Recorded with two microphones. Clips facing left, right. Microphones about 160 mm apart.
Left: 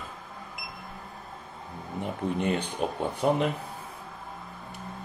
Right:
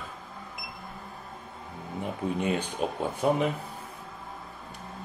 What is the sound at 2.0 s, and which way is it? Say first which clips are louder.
Speech: left 1 dB; centre (ahead or behind).